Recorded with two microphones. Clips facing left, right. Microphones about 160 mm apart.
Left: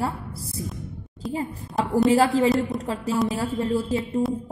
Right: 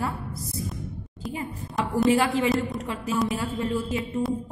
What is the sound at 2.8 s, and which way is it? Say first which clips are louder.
A woman's voice: left 2 dB; 35° left (ahead or behind).